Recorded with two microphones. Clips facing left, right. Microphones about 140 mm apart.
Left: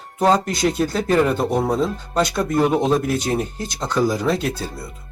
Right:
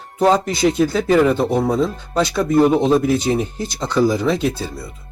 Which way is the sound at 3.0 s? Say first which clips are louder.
Right 4 dB; 45° left (ahead or behind).